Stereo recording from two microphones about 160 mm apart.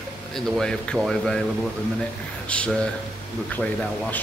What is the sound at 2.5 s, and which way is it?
Speech, 5° left (ahead or behind).